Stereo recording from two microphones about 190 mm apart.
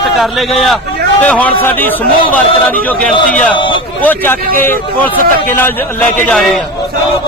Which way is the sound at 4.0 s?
10° left (ahead or behind).